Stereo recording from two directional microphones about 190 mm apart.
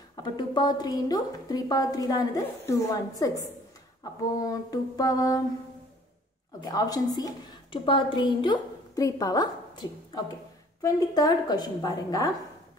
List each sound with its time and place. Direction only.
0.1 s a woman's voice: 25° left (ahead or behind)
6.6 s a woman's voice: 20° left (ahead or behind)